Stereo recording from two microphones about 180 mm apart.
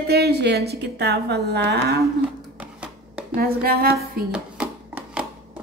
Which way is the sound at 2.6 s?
5° right (ahead or behind).